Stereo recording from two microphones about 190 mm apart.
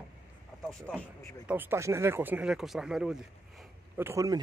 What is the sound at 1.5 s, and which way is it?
A man's voice, 10° right (ahead or behind).